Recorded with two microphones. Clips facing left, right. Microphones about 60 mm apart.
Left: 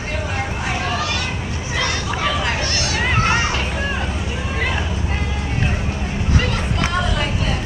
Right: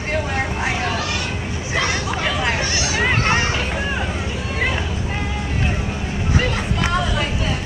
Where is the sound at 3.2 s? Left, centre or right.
Centre.